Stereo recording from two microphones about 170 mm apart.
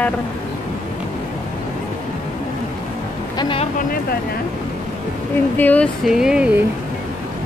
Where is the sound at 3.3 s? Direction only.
30° left (ahead or behind).